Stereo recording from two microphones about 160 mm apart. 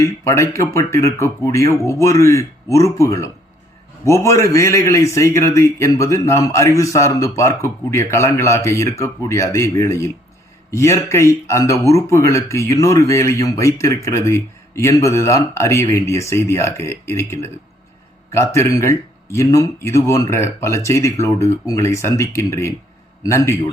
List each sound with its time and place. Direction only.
0.0 s speech: 20° left (ahead or behind)